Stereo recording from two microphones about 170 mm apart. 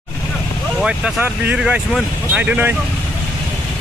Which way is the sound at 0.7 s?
5° right (ahead or behind).